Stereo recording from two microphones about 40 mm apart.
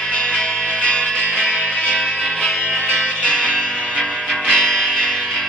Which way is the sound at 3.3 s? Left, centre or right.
Centre.